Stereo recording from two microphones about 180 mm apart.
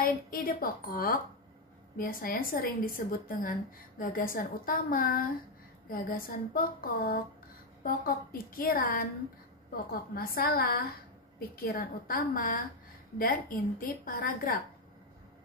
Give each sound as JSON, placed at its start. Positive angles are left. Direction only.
{"t": 0.0, "sound": "a woman's voice", "side_deg": 55}